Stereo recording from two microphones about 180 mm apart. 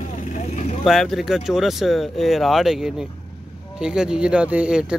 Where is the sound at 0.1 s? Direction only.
40° left (ahead or behind).